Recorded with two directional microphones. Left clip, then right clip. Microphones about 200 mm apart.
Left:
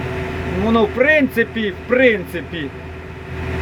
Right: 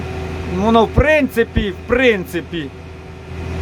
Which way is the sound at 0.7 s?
20° right (ahead or behind).